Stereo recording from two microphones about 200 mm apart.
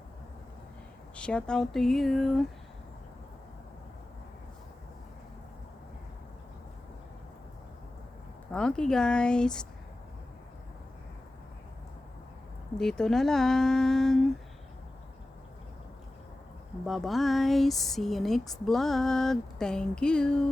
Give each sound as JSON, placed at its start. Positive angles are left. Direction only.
{"t": 1.1, "sound": "speech", "side_deg": 5}
{"t": 8.5, "sound": "speech", "side_deg": 5}
{"t": 12.7, "sound": "speech", "side_deg": 5}
{"t": 16.8, "sound": "speech", "side_deg": 0}